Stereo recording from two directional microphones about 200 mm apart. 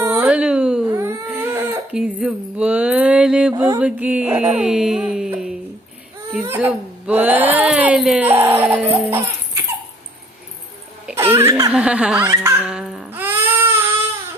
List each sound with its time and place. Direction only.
0.0 s a sound: 10° right (ahead or behind)
0.9 s baby cry: 15° right (ahead or behind)
3.5 s mantra: 15° right (ahead or behind)
3.8 s a sound: 5° right (ahead or behind)
11.2 s laughter: 10° right (ahead or behind)
11.7 s laughter: 5° right (ahead or behind)